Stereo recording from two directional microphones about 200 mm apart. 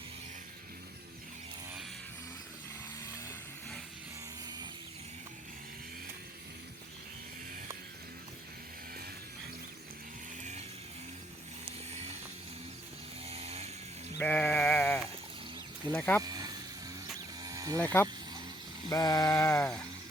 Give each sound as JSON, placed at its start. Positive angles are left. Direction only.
{"t": 11.6, "sound": "vehicle", "side_deg": -30}
{"t": 13.2, "sound": "vehicle", "side_deg": -30}
{"t": 14.2, "sound": "sheep", "side_deg": 10}
{"t": 15.9, "sound": "speech", "side_deg": 10}
{"t": 16.2, "sound": "a sound", "side_deg": -20}
{"t": 17.7, "sound": "speech", "side_deg": 10}